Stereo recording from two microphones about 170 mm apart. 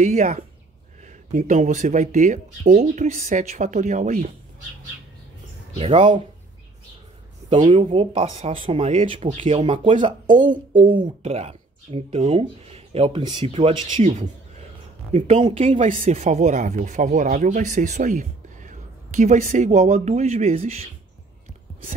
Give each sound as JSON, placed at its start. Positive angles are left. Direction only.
{"t": 0.0, "sound": "speech", "side_deg": -45}
{"t": 5.8, "sound": "speech", "side_deg": -30}
{"t": 7.4, "sound": "speech", "side_deg": -30}